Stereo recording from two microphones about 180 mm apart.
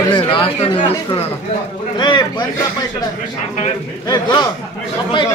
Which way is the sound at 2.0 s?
25° left (ahead or behind).